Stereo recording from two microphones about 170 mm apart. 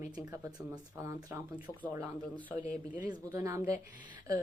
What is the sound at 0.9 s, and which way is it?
Speech, 15° right (ahead or behind).